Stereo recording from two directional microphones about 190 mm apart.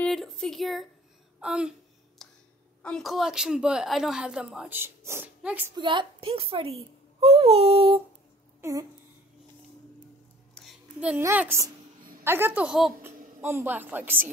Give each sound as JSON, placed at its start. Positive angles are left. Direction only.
{"t": 0.0, "sound": "speech", "side_deg": 0}
{"t": 2.2, "sound": "a sound", "side_deg": 0}
{"t": 2.8, "sound": "a woman's voice", "side_deg": 0}
{"t": 5.8, "sound": "a child's voice", "side_deg": -25}
{"t": 8.5, "sound": "speech", "side_deg": -15}
{"t": 10.5, "sound": "a sound", "side_deg": 0}
{"t": 12.2, "sound": "a woman's voice", "side_deg": -10}